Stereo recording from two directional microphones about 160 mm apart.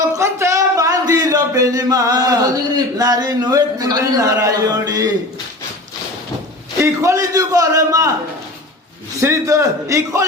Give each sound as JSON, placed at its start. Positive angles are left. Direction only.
{"t": 0.2, "sound": "speech", "side_deg": -15}
{"t": 6.7, "sound": "a man's voice", "side_deg": -20}
{"t": 9.2, "sound": "a man's voice", "side_deg": -20}